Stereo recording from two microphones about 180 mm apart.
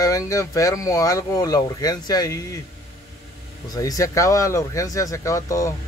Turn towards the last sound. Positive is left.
turn(degrees=15)  # may be behind; listen again after turning